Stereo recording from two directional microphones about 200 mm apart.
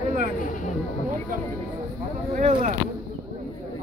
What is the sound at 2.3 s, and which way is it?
Speech, 40° right (ahead or behind).